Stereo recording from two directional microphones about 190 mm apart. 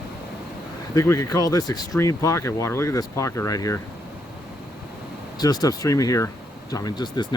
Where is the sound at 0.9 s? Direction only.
15° left (ahead or behind).